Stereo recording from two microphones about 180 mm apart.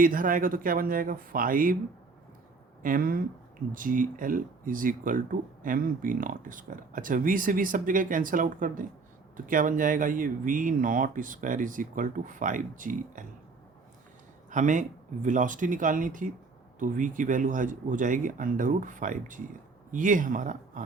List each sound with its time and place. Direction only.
0.0 s speech: 50° right (ahead or behind)
2.8 s speech: 50° right (ahead or behind)
14.5 s speech: 45° right (ahead or behind)